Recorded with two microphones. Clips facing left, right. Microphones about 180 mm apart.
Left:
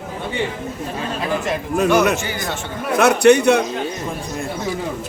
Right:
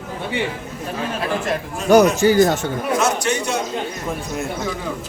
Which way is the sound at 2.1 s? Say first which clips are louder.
Right 10 dB; 40° right (ahead or behind).